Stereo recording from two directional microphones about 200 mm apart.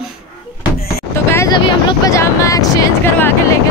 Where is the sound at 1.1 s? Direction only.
15° left (ahead or behind).